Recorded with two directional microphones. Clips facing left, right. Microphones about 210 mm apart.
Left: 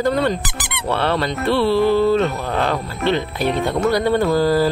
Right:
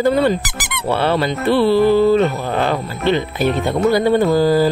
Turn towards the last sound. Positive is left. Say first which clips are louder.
# right 3 dB
turn(degrees=0)  # may be behind; listen again after turning